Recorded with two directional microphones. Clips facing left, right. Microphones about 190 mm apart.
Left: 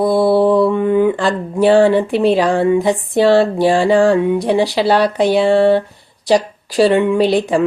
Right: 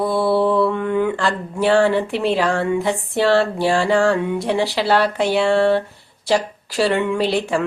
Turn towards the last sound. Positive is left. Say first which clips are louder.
# left 6 dB
turn(degrees=15)  # may be behind; listen again after turning